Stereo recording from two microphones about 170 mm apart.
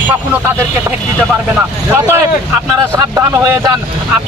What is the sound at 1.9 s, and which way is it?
Speech, 15° right (ahead or behind).